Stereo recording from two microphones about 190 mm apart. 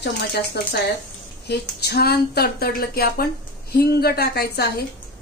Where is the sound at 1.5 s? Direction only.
60° left (ahead or behind).